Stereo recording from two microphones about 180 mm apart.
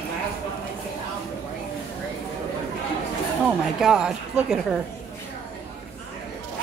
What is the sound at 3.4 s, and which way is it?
A woman's voice, 5° right (ahead or behind).